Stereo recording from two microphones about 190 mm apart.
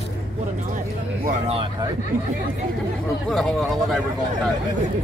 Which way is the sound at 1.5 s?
30° right (ahead or behind).